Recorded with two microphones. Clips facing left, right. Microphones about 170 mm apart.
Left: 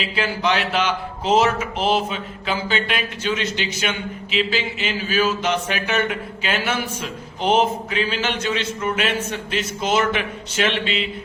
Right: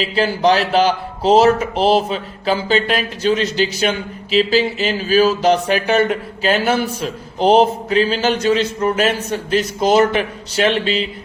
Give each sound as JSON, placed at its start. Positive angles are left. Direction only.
{"t": 0.0, "sound": "a man's voice", "side_deg": -35}